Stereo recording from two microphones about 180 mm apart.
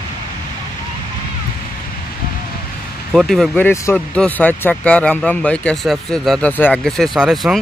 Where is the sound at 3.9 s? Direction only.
5° left (ahead or behind).